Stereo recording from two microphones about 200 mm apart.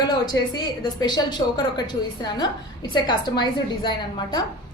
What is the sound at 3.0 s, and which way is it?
A woman's voice, 20° left (ahead or behind).